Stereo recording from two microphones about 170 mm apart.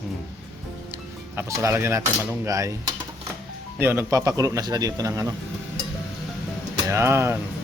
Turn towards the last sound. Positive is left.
turn(degrees=-15)  # may be behind; listen again after turning